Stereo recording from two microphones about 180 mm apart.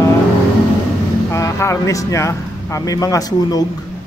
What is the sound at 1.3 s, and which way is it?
Speech, 15° left (ahead or behind).